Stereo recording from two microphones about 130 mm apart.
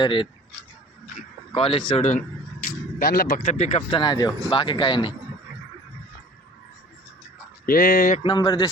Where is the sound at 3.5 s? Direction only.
55° left (ahead or behind).